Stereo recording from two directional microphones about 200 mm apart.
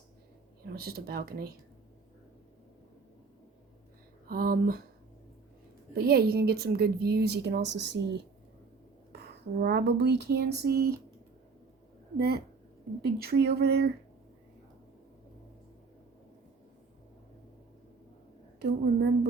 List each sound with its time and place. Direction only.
0.7 s a woman's voice: 50° right (ahead or behind)
4.3 s a woman's voice: 50° right (ahead or behind)
5.9 s a woman's voice: 50° right (ahead or behind)
9.2 s a sound: 55° right (ahead or behind)
12.1 s a woman's voice: 50° right (ahead or behind)
18.6 s a sound: 55° right (ahead or behind)